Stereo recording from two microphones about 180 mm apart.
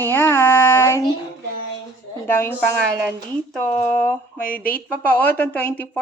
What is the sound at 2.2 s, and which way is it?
Speech, 15° left (ahead or behind).